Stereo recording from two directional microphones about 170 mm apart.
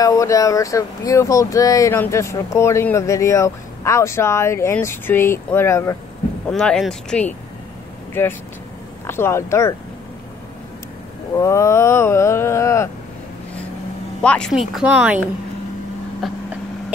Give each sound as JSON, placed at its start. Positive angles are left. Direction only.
{"t": 0.0, "sound": "speech", "side_deg": 20}
{"t": 6.5, "sound": "speech", "side_deg": 5}
{"t": 11.3, "sound": "speech", "side_deg": 15}
{"t": 14.2, "sound": "speech", "side_deg": 5}